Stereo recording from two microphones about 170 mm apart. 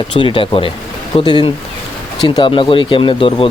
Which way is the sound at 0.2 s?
30° left (ahead or behind).